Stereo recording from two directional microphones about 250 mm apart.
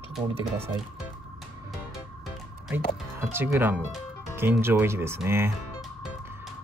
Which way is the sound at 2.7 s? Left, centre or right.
Centre.